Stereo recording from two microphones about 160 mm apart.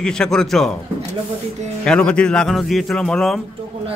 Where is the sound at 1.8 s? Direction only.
5° left (ahead or behind).